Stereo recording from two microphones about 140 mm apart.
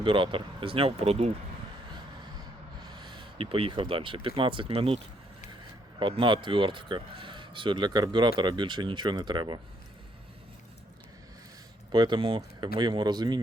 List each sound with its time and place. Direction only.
0.0 s speech: 40° right (ahead or behind)
2.8 s speech: 30° right (ahead or behind)
6.0 s speech: 35° right (ahead or behind)
11.9 s speech: 30° right (ahead or behind)